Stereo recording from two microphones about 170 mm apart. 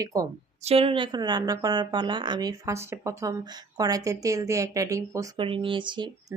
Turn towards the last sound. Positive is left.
turn(degrees=-25)  # may be behind; listen again after turning